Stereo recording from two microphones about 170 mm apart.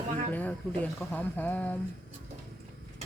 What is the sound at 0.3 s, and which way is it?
Speech, 10° left (ahead or behind).